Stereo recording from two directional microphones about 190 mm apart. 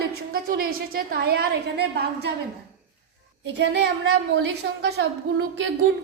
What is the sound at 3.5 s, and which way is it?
A woman's voice, 65° right (ahead or behind).